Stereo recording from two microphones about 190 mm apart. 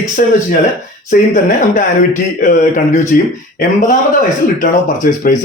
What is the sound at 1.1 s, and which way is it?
Speech, 45° left (ahead or behind).